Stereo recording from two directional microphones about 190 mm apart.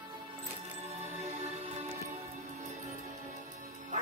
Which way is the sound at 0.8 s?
35° right (ahead or behind).